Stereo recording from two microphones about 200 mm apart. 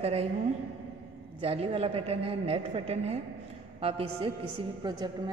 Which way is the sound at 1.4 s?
30° right (ahead or behind).